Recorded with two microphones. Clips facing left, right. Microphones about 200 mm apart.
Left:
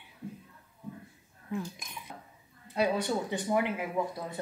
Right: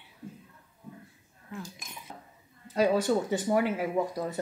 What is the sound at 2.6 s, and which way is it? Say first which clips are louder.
Speech: right 4 dB; 45° right (ahead or behind).